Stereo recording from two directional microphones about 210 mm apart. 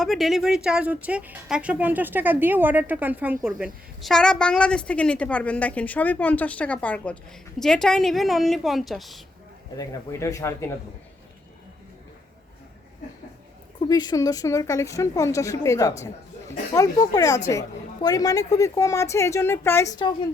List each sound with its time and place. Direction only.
0.0 s a woman's voice: centre (ahead or behind)
9.7 s speech: 15° left (ahead or behind)
13.8 s speech: 20° left (ahead or behind)